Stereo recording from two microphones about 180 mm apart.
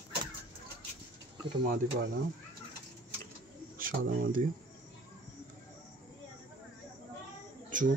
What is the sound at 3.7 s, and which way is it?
Speech, 50° right (ahead or behind).